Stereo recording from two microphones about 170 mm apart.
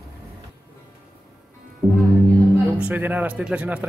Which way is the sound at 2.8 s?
10° right (ahead or behind).